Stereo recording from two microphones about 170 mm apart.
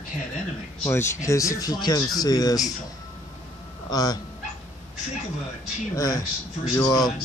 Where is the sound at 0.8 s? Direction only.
15° left (ahead or behind).